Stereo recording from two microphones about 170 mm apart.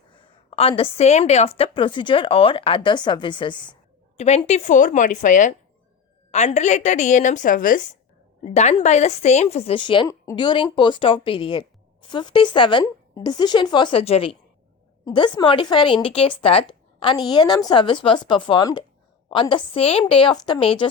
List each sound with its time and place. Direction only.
0.1 s a woman's voice: 35° left (ahead or behind)
4.2 s a woman's voice: 40° left (ahead or behind)